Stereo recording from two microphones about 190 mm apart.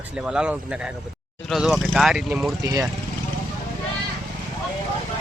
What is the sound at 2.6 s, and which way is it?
Speech, 20° right (ahead or behind).